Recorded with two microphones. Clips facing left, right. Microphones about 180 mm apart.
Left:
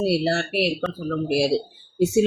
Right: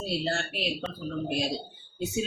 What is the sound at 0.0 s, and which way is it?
Speech, 75° left (ahead or behind).